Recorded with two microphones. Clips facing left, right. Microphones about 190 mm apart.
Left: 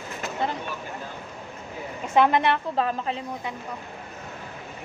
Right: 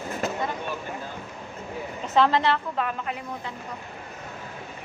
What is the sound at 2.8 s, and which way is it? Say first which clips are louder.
Speech: left 3 dB; 30° left (ahead or behind).